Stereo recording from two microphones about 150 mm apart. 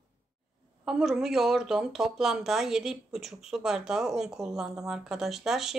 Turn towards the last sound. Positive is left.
turn(degrees=0)  # may be behind; listen again after turning